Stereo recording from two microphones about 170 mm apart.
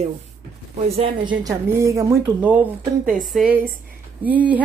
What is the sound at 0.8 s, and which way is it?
Speech, 35° right (ahead or behind).